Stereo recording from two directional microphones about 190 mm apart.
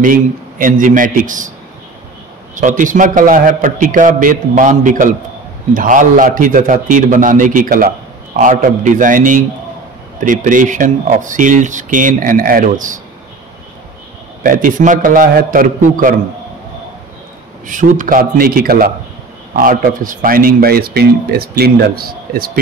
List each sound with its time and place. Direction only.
0.0 s speech: 45° right (ahead or behind)
2.5 s speech: 40° right (ahead or behind)
14.4 s speech: 45° right (ahead or behind)
17.6 s speech: 45° right (ahead or behind)